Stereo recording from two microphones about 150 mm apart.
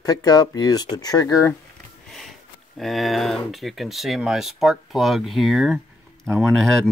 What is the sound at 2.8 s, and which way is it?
Speech, centre (ahead or behind).